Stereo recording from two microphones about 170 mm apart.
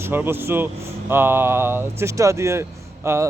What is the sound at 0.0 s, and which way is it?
Speech, 15° right (ahead or behind).